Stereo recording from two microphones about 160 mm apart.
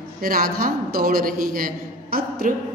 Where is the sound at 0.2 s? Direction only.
65° right (ahead or behind).